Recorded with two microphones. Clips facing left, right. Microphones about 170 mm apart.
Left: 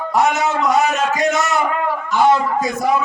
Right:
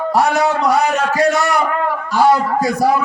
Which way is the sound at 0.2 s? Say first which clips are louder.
Right 1 dB; 20° left (ahead or behind).